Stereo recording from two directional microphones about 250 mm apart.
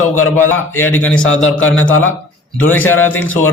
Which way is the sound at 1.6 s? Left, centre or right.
Left.